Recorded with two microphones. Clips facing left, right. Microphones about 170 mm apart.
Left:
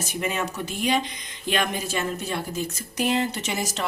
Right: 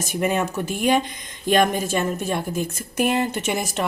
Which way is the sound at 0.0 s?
50° right (ahead or behind).